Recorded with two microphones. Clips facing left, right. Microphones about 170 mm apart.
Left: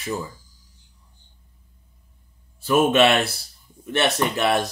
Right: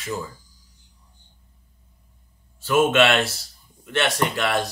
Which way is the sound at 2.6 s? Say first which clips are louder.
Left 1 dB; 15° left (ahead or behind).